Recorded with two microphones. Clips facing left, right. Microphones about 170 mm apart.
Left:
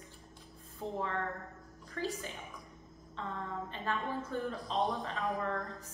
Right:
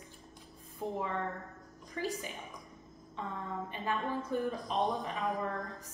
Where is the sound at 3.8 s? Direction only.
15° right (ahead or behind).